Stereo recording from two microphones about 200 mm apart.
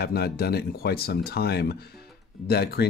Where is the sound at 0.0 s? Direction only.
50° left (ahead or behind).